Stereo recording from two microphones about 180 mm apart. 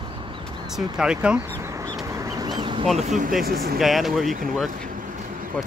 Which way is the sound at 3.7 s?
Centre (ahead or behind).